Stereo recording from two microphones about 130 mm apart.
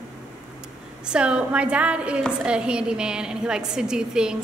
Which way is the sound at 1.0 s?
10° right (ahead or behind).